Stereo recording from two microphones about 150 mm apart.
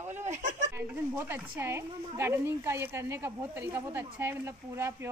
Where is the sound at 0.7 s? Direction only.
15° right (ahead or behind).